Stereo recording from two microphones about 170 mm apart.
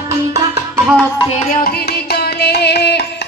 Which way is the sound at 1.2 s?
45° left (ahead or behind).